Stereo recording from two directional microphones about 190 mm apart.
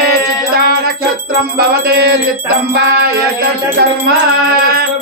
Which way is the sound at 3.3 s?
50° right (ahead or behind).